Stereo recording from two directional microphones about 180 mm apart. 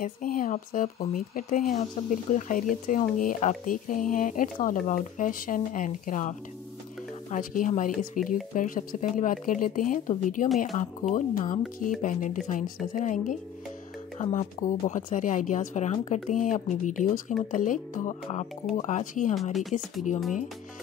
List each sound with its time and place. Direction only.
0.0 s speech: 50° left (ahead or behind)
1.8 s speech: 40° left (ahead or behind)